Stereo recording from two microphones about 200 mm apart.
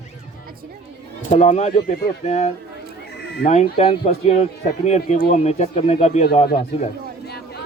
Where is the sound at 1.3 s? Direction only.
30° left (ahead or behind).